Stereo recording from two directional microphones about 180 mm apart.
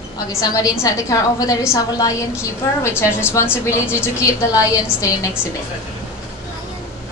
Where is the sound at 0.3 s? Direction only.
20° left (ahead or behind).